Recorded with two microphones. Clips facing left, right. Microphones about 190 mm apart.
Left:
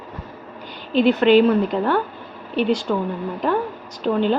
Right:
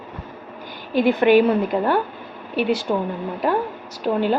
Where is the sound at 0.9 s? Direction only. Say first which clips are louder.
Left 1 dB; 10° right (ahead or behind).